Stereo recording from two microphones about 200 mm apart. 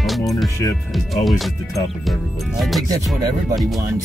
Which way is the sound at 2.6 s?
Centre (ahead or behind).